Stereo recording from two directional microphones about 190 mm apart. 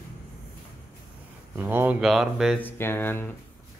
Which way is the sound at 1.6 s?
10° right (ahead or behind).